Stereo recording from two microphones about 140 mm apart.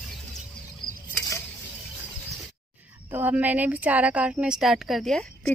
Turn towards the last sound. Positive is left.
turn(degrees=5)  # may be behind; listen again after turning